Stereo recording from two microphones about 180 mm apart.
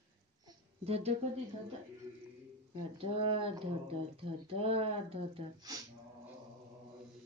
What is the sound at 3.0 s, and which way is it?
Speech, 30° right (ahead or behind).